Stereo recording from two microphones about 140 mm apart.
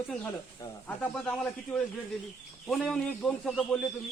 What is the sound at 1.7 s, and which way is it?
A man's voice, 5° left (ahead or behind).